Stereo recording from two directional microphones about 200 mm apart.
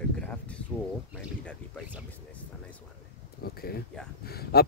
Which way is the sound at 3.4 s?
50° left (ahead or behind).